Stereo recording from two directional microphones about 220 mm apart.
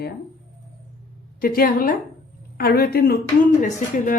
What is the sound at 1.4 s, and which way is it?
A woman's voice, 40° left (ahead or behind).